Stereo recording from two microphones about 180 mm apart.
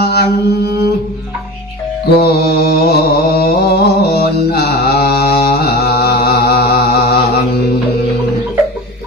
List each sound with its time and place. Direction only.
0.0 s mantra: 60° left (ahead or behind)
2.1 s mantra: 60° left (ahead or behind)